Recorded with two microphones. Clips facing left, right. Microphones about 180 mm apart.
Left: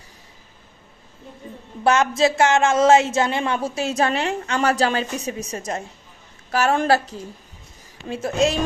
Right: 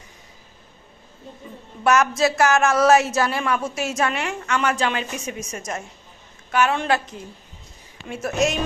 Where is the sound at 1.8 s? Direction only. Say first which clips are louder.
Left 1 dB; 25° left (ahead or behind).